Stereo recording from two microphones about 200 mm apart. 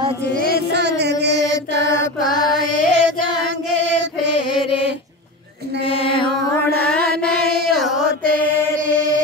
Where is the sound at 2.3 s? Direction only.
20° left (ahead or behind).